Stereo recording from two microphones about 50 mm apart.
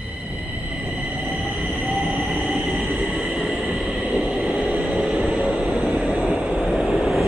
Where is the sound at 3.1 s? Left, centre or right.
Right.